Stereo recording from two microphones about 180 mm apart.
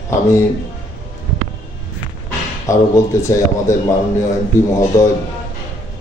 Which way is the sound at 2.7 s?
15° left (ahead or behind).